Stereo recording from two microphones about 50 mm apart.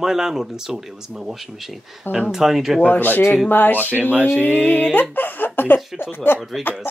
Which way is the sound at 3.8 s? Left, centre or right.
Right.